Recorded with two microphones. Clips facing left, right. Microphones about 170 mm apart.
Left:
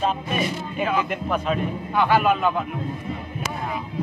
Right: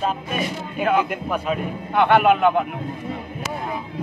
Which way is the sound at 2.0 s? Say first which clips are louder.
Right 4 dB; 65° right (ahead or behind).